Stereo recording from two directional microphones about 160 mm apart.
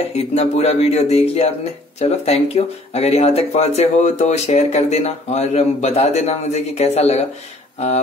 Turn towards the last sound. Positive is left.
turn(degrees=45)  # may be behind; listen again after turning